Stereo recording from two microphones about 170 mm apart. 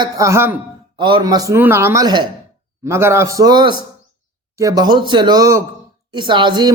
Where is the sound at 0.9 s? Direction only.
30° right (ahead or behind).